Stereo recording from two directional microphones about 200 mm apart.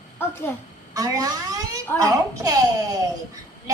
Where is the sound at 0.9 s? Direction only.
15° right (ahead or behind).